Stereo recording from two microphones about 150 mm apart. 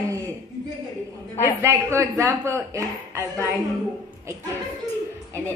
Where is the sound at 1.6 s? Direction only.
20° right (ahead or behind).